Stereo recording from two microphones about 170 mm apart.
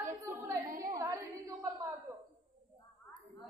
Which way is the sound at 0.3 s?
15° right (ahead or behind).